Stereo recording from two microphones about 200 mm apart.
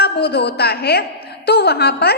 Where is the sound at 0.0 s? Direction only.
55° left (ahead or behind).